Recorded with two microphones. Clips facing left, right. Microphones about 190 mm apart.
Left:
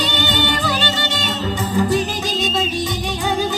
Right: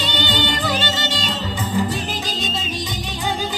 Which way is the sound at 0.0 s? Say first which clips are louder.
Left 2 dB; 45° left (ahead or behind).